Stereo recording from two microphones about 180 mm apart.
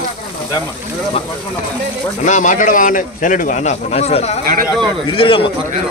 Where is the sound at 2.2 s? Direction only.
45° left (ahead or behind).